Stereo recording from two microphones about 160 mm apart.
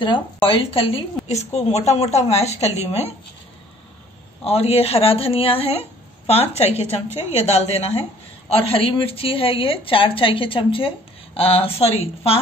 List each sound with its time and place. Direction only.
0.0 s a woman's voice: 35° left (ahead or behind)
4.5 s a woman's voice: 40° left (ahead or behind)